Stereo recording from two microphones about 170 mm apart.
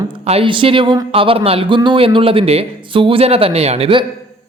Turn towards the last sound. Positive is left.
turn(degrees=-35)  # may be behind; listen again after turning